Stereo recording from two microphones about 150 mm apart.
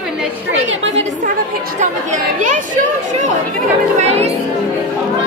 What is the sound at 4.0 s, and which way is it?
Speech, 45° right (ahead or behind).